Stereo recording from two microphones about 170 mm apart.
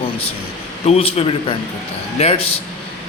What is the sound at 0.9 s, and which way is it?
A man's voice, 35° left (ahead or behind).